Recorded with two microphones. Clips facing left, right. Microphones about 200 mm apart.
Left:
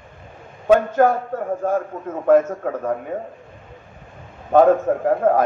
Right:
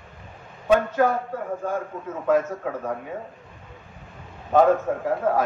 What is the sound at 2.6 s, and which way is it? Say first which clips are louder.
Speech: left 4 dB; 50° left (ahead or behind).